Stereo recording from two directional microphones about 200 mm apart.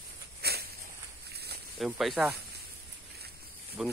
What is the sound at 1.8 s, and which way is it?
Speech, centre (ahead or behind).